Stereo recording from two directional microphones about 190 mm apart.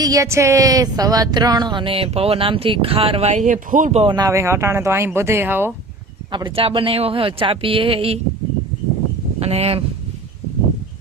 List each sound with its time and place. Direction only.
0.0 s speech: 15° right (ahead or behind)
6.3 s speech: 25° right (ahead or behind)
9.4 s speech: 35° right (ahead or behind)